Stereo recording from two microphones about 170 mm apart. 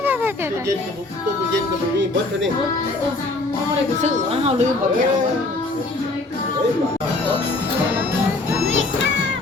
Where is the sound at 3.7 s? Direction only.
35° right (ahead or behind).